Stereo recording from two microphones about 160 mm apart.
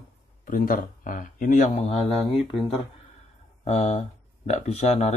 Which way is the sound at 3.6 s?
45° left (ahead or behind).